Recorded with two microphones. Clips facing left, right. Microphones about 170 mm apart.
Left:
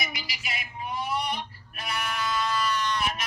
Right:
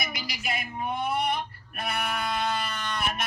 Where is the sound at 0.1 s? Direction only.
50° right (ahead or behind).